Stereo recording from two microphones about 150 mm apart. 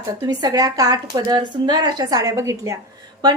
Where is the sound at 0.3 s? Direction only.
25° right (ahead or behind).